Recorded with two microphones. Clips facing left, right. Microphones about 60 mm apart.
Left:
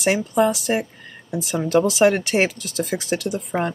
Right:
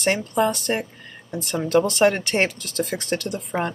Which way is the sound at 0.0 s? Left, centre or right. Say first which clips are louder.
Left 2 dB; centre.